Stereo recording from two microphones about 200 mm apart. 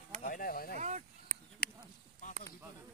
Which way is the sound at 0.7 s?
35° right (ahead or behind).